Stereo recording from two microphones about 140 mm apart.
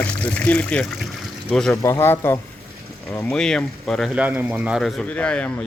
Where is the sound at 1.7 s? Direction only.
20° left (ahead or behind).